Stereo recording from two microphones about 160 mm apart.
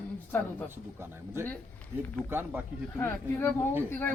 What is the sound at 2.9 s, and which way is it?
Speech, 15° left (ahead or behind).